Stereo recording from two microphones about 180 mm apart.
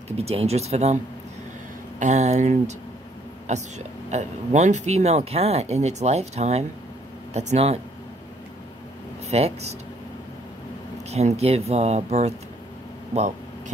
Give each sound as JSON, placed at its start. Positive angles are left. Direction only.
{"t": 0.2, "sound": "speech", "side_deg": -35}
{"t": 2.0, "sound": "speech", "side_deg": -40}
{"t": 9.3, "sound": "speech", "side_deg": -35}
{"t": 11.1, "sound": "speech", "side_deg": -35}